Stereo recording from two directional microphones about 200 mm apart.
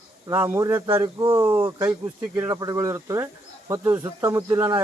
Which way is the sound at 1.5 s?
25° right (ahead or behind).